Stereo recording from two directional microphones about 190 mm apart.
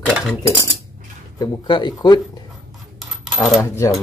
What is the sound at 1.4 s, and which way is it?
Speech, 25° left (ahead or behind).